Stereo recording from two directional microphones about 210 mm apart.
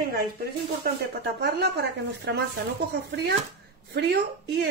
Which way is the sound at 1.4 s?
55° right (ahead or behind).